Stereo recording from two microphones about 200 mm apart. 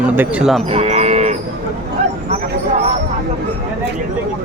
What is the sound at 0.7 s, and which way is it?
Cattle, 30° right (ahead or behind).